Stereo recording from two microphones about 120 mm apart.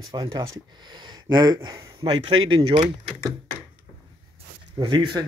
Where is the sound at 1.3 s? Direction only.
35° right (ahead or behind).